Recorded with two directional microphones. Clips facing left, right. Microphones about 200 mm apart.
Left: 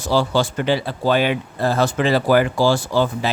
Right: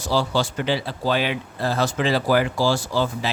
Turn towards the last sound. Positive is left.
turn(degrees=55)  # may be behind; listen again after turning